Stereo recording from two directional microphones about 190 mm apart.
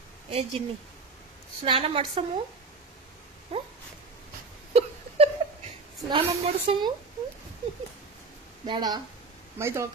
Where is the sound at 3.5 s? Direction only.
30° right (ahead or behind).